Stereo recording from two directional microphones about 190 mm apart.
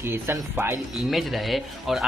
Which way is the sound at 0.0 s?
10° right (ahead or behind).